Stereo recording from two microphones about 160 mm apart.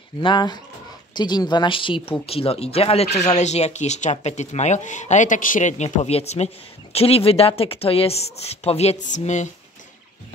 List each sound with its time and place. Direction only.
0.2 s speech: 30° left (ahead or behind); by 9.5 s 50° left (ahead or behind)